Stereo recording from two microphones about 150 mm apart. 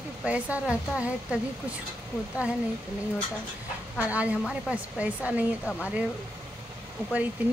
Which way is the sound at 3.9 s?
10° right (ahead or behind).